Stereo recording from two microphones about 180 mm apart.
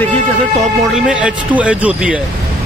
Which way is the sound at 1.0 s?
5° right (ahead or behind).